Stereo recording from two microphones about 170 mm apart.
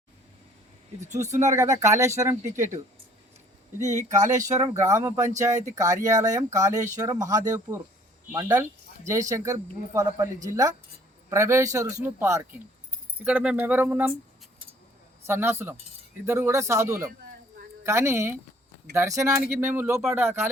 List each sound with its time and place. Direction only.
0.9 s speech: 45° right (ahead or behind)
1.5 s speech: 20° right (ahead or behind)
3.9 s speech: 45° right (ahead or behind)
4.4 s speech: 20° right (ahead or behind)
15.3 s speech: 15° right (ahead or behind)